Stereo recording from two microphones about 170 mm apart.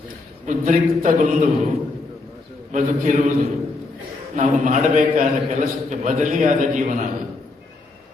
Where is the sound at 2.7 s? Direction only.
50° right (ahead or behind).